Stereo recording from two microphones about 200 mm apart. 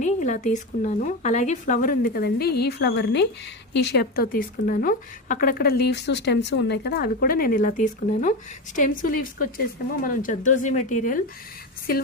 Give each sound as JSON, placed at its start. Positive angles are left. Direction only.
{"t": 0.0, "sound": "a woman's voice", "side_deg": 40}